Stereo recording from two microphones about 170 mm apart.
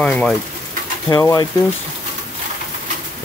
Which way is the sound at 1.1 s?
20° left (ahead or behind).